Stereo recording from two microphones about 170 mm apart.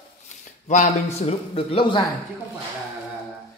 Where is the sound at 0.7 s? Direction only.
40° left (ahead or behind).